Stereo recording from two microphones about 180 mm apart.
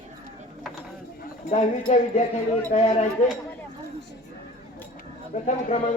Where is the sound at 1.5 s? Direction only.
40° left (ahead or behind).